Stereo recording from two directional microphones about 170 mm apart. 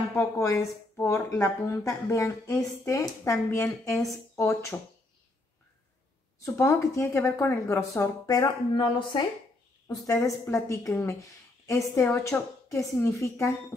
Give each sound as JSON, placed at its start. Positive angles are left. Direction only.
{"t": 0.1, "sound": "speech", "side_deg": 15}
{"t": 6.4, "sound": "speech", "side_deg": 15}